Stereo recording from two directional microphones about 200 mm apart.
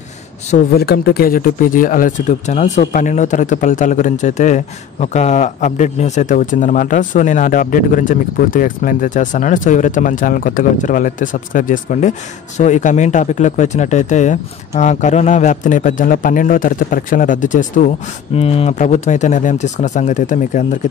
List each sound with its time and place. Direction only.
0.7 s speech: 55° left (ahead or behind)